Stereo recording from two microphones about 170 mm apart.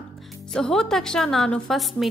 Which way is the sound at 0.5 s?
5° left (ahead or behind).